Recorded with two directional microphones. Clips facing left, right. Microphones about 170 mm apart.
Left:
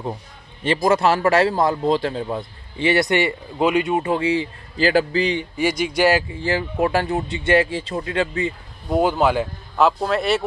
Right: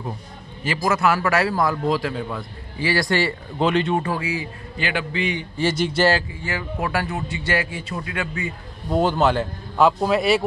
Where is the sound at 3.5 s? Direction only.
10° left (ahead or behind); by 5.4 s 35° left (ahead or behind).